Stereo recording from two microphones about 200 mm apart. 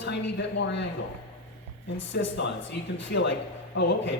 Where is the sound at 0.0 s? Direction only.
60° left (ahead or behind).